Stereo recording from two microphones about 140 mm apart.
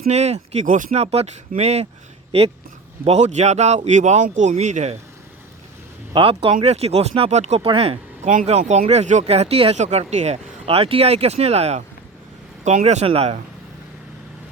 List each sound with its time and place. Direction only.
0.1 s speech: 50° right (ahead or behind)
0.9 s speech: 50° right (ahead or behind)
3.0 s speech: 50° right (ahead or behind)
6.1 s speech: 40° right (ahead or behind)